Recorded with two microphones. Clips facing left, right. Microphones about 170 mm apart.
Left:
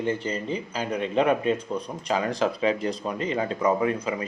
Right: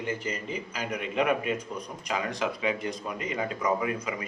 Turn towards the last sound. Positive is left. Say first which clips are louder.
# left 5 dB
turn(degrees=30)  # may be behind; listen again after turning